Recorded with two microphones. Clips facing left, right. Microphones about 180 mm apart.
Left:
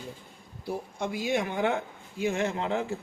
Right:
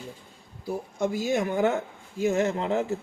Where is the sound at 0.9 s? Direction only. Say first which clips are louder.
Right 4 dB; 45° right (ahead or behind).